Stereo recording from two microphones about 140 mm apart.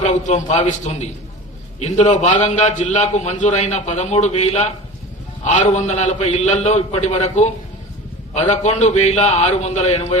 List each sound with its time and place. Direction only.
0.0 s a man's voice: 60° left (ahead or behind)